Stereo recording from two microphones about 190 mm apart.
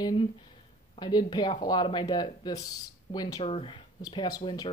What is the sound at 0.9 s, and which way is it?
Speech, 25° left (ahead or behind).